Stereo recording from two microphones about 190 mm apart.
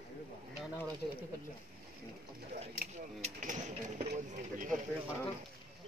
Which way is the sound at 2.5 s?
40° right (ahead or behind).